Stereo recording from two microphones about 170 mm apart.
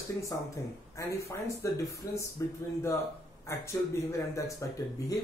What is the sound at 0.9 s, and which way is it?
Speech, 20° left (ahead or behind).